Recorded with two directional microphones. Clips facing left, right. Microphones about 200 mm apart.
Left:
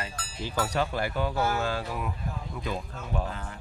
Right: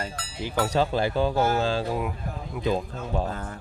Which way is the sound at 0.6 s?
30° right (ahead or behind).